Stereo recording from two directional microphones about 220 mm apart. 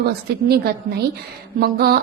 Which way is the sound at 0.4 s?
45° right (ahead or behind).